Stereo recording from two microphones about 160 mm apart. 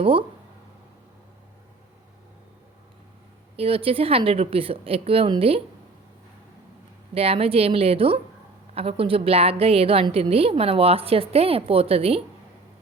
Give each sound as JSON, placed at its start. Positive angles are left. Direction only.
{"t": 0.0, "sound": "a woman's voice", "side_deg": -35}
{"t": 3.5, "sound": "a woman's voice", "side_deg": -35}
{"t": 7.1, "sound": "a woman's voice", "side_deg": -35}